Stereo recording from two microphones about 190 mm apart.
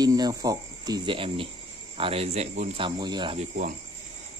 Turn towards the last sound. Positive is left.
turn(degrees=-25)  # may be behind; listen again after turning